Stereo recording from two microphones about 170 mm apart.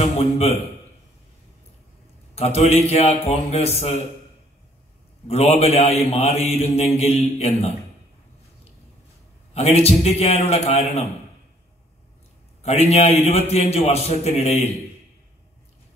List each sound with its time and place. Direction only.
0.0 s a man's voice: 40° left (ahead or behind)
2.3 s a man's voice: 40° left (ahead or behind)
5.3 s a man's voice: 40° left (ahead or behind)
9.5 s a man's voice: 40° left (ahead or behind)
12.6 s a man's voice: 40° left (ahead or behind)